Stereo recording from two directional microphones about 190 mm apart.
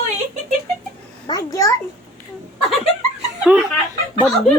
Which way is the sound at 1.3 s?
20° left (ahead or behind).